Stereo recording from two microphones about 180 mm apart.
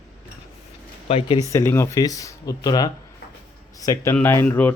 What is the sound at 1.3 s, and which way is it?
Speech, 15° left (ahead or behind).